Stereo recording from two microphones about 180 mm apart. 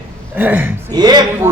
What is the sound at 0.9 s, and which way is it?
Speech, 20° right (ahead or behind).